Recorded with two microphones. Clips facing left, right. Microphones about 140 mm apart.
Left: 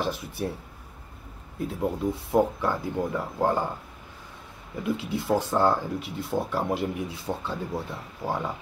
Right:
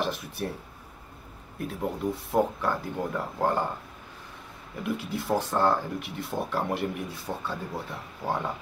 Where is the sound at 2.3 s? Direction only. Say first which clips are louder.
Left 2 dB; 10° left (ahead or behind).